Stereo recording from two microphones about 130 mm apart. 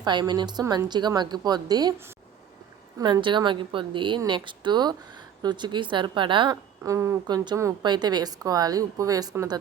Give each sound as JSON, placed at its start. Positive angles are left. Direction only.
{"t": 0.0, "sound": "a woman's voice", "side_deg": -35}
{"t": 3.0, "sound": "a woman's voice", "side_deg": -35}
{"t": 6.8, "sound": "speech", "side_deg": -20}